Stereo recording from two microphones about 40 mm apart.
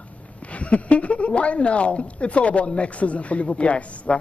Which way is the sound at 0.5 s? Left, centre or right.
Left.